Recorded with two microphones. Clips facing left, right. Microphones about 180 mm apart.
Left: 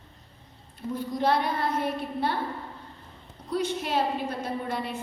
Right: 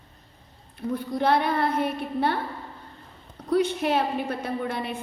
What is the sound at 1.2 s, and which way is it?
Speech, 60° right (ahead or behind).